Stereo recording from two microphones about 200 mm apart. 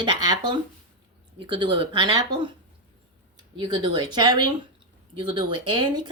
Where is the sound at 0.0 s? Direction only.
25° right (ahead or behind).